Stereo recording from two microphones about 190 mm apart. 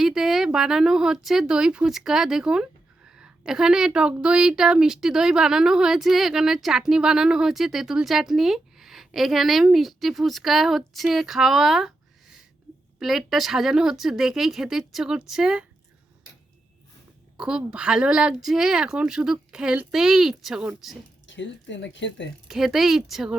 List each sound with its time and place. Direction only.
0.0 s a woman's voice: centre (ahead or behind)
13.0 s a woman's voice: centre (ahead or behind)
17.3 s a woman's voice: 5° right (ahead or behind)
21.2 s speech: 75° left (ahead or behind)
22.4 s a woman's voice: centre (ahead or behind)